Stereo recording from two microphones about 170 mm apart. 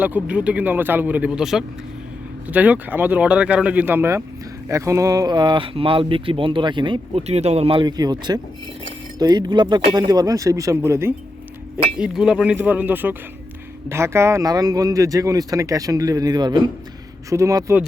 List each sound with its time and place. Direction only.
0.0 s speech: 10° right (ahead or behind)
11.9 s speech: 5° right (ahead or behind)